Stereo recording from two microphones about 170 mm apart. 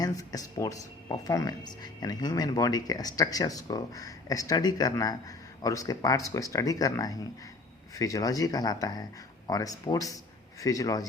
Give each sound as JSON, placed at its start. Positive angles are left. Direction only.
{"t": 0.0, "sound": "speech", "side_deg": 20}